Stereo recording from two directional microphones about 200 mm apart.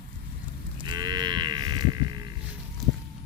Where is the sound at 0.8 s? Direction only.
20° right (ahead or behind).